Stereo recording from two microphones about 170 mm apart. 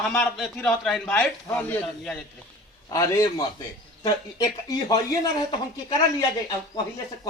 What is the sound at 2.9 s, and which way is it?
A man's voice, 20° left (ahead or behind).